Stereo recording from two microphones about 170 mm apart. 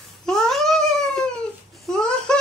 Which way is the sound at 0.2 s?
5° left (ahead or behind).